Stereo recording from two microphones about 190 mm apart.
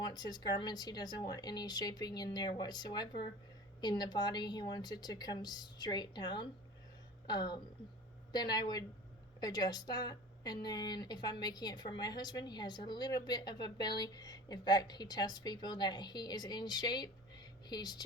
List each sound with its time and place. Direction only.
0.0 s speech: 20° left (ahead or behind)